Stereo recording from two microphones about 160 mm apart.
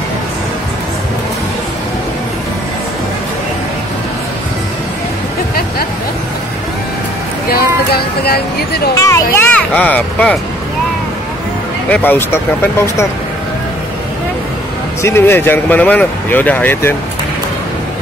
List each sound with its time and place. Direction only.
7.9 s speech: 75° left (ahead or behind)
8.9 s speech: 20° left (ahead or behind)
11.9 s speech: 10° left (ahead or behind)
15.0 s speech: 15° left (ahead or behind)